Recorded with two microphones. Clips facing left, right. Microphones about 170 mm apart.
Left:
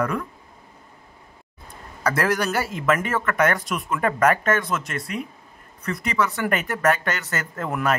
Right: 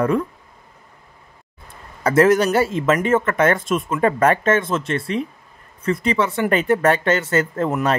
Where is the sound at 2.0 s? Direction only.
25° right (ahead or behind).